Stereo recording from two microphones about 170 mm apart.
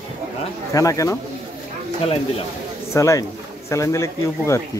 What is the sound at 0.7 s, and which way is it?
Speech, 20° left (ahead or behind).